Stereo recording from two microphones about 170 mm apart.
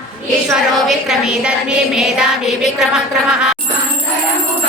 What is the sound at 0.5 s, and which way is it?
A woman's voice, 5° right (ahead or behind).